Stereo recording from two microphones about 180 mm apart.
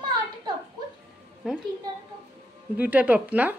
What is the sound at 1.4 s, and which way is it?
Speech, 5° right (ahead or behind).